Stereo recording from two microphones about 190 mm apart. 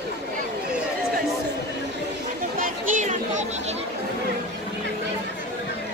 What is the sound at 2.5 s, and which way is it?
Chatter, 45° right (ahead or behind).